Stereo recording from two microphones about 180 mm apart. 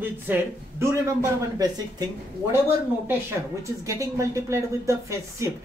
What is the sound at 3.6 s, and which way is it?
Speech, 15° right (ahead or behind).